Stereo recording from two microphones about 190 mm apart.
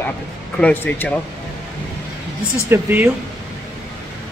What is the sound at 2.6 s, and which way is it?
Speech, 10° right (ahead or behind).